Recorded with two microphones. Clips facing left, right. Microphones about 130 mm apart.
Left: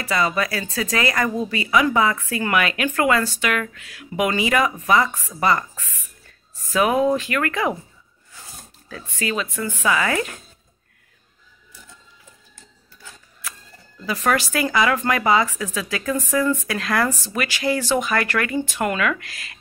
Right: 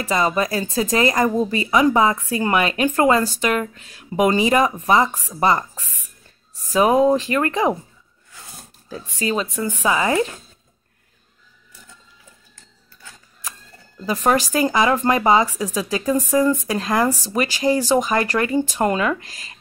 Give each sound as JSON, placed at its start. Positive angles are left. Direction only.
{"t": 0.2, "sound": "speech", "side_deg": -40}
{"t": 5.1, "sound": "speech", "side_deg": -15}
{"t": 6.7, "sound": "speech", "side_deg": -30}
{"t": 9.2, "sound": "speech", "side_deg": -30}
{"t": 14.5, "sound": "speech", "side_deg": -25}
{"t": 16.0, "sound": "speech", "side_deg": -15}
{"t": 16.6, "sound": "speech", "side_deg": -25}
{"t": 17.3, "sound": "speech", "side_deg": -35}